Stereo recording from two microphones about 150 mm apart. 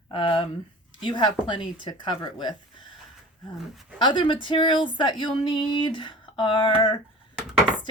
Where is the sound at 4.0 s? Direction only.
30° left (ahead or behind).